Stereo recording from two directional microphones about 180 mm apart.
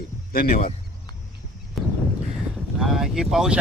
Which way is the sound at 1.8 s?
Centre (ahead or behind).